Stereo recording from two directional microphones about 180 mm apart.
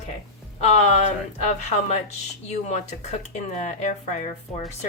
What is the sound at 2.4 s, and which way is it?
A woman's voice, 40° left (ahead or behind).